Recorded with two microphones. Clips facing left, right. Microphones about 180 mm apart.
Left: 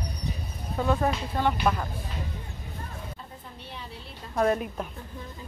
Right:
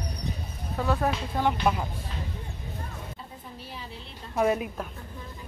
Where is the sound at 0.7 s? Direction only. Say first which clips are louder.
Left 1 dB; centre (ahead or behind).